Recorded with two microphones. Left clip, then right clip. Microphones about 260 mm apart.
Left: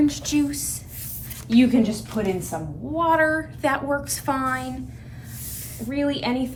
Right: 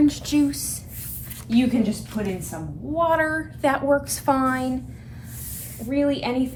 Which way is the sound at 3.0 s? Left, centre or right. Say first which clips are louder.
Left 1 dB; centre.